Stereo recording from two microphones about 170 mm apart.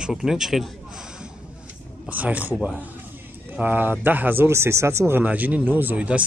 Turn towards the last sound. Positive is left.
turn(degrees=-10)  # may be behind; listen again after turning